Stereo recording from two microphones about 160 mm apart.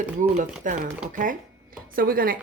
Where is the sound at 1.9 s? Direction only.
65° right (ahead or behind).